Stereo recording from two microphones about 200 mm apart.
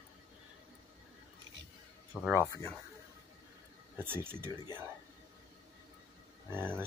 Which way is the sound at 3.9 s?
10° right (ahead or behind).